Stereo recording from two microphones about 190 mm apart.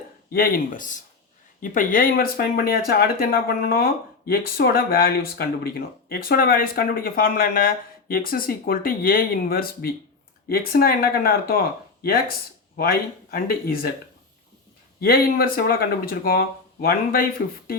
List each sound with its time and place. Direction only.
0.3 s speech: 50° left (ahead or behind)
12.7 s speech: 55° left (ahead or behind)
15.0 s speech: 50° left (ahead or behind)